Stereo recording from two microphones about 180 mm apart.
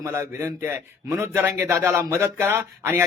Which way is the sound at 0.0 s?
15° right (ahead or behind).